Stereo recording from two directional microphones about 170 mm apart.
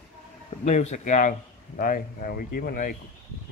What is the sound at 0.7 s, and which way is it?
A man's voice, 45° left (ahead or behind).